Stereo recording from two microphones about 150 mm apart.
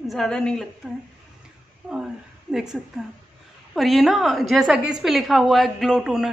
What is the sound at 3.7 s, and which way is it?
A woman's voice, centre (ahead or behind).